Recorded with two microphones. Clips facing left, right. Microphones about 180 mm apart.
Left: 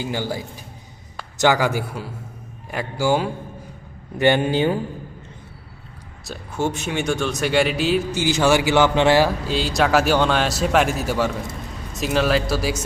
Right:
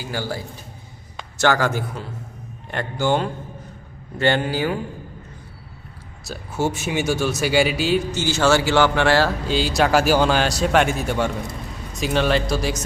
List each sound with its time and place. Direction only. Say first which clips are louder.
0.0 s a man's voice: left 2 dB; 20° left (ahead or behind)
4.2 s speech: left 3 dB; 20° left (ahead or behind)
6.2 s speech: right 1 dB; 5° right (ahead or behind)
8.1 s a man's voice: left 2 dB; 15° left (ahead or behind)
9.5 s speech: right 1 dB; centre (ahead or behind)